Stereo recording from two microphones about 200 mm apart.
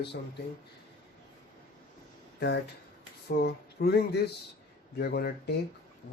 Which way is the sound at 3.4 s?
55° left (ahead or behind).